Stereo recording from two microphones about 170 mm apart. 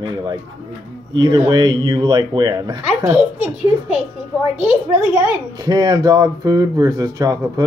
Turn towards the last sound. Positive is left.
turn(degrees=-20)  # may be behind; listen again after turning